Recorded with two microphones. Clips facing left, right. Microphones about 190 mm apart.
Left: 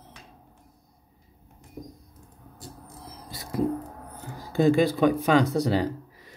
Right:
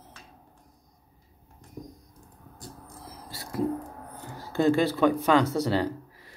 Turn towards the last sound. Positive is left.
turn(degrees=15)  # may be behind; listen again after turning